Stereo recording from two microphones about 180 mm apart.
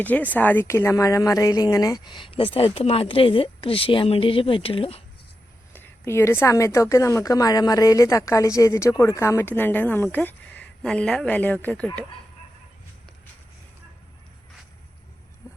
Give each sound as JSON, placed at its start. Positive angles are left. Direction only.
{"t": 0.0, "sound": "speech", "side_deg": 10}
{"t": 5.7, "sound": "a woman's voice", "side_deg": 10}
{"t": 15.4, "sound": "a sound", "side_deg": 15}